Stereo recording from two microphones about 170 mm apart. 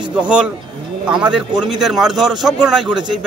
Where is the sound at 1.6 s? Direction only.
5° right (ahead or behind).